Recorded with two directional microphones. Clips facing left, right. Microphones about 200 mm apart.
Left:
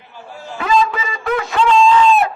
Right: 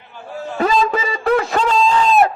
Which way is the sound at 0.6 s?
40° right (ahead or behind).